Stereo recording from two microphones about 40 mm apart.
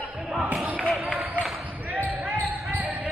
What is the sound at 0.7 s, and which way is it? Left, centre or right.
Basketball bounce, right.